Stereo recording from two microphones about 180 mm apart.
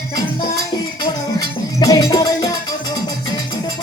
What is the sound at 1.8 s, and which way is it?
Music, 20° left (ahead or behind).